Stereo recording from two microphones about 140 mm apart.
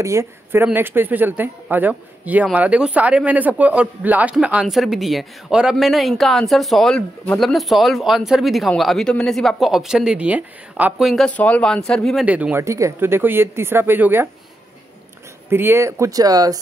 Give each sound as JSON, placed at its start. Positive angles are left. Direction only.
{"t": 0.0, "sound": "speech", "side_deg": -20}
{"t": 12.3, "sound": "speech", "side_deg": -10}
{"t": 12.6, "sound": "speech", "side_deg": -20}
{"t": 15.5, "sound": "speech", "side_deg": -15}